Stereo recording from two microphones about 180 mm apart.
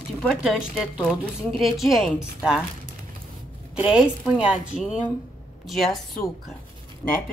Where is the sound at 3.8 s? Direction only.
5° right (ahead or behind).